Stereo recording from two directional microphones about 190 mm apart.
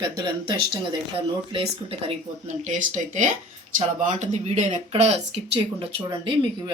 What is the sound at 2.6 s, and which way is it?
Speech, 40° right (ahead or behind).